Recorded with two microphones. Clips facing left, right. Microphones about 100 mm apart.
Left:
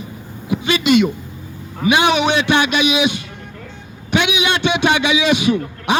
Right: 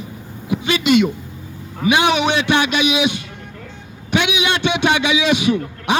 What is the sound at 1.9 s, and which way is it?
A man's voice, 65° left (ahead or behind).